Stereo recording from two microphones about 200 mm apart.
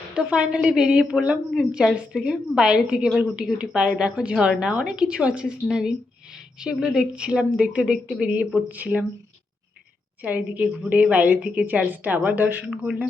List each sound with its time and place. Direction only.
0.1 s a woman's voice: 5° right (ahead or behind)
10.2 s a woman's voice: 5° right (ahead or behind)